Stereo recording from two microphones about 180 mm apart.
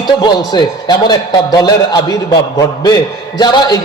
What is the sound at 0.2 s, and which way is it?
A man's voice, 25° left (ahead or behind).